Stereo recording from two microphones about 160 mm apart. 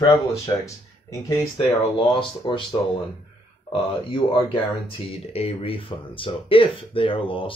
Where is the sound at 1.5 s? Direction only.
35° left (ahead or behind).